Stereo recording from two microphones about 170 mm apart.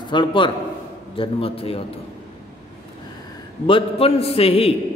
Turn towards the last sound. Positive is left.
turn(degrees=35)  # may be behind; listen again after turning